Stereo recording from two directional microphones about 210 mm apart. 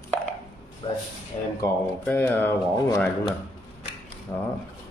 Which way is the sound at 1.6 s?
10° left (ahead or behind).